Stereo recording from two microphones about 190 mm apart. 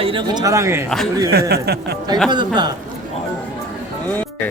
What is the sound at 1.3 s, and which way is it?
Speech, 55° right (ahead or behind).